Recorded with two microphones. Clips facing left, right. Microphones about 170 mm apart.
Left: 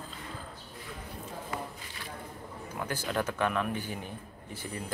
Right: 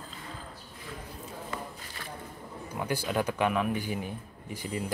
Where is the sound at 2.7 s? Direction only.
10° right (ahead or behind).